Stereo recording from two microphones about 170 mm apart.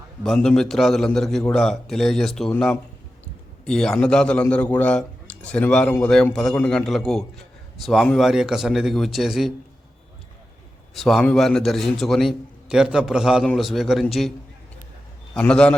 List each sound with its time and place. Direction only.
0.2 s a man's voice: 5° left (ahead or behind)
10.9 s a man's voice: centre (ahead or behind)
15.4 s a man's voice: 5° left (ahead or behind)